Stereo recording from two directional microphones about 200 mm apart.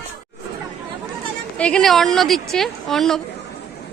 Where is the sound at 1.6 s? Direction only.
5° left (ahead or behind).